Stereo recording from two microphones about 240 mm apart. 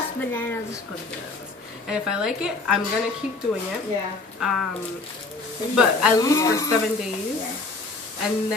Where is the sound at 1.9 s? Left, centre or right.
Centre.